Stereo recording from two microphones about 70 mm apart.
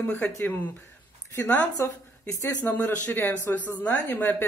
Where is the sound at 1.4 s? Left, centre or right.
Left.